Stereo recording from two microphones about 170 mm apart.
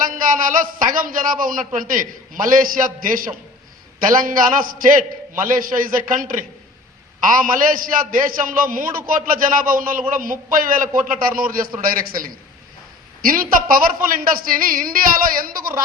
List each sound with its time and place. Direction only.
0.0 s a man's voice: 50° right (ahead or behind)